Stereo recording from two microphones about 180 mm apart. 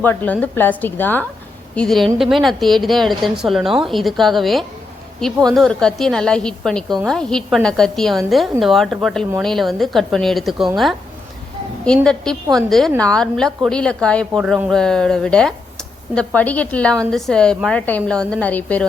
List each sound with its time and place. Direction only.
0.0 s a woman's voice: 10° left (ahead or behind)
12.0 s a woman's voice: 5° left (ahead or behind)